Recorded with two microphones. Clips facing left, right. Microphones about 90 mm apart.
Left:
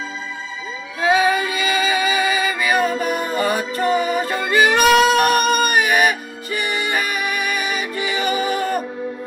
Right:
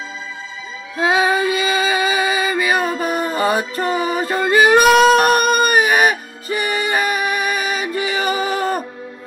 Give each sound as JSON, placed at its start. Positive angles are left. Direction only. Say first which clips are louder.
{"t": 0.9, "sound": "music", "louder": "right 1 dB", "side_deg": -25}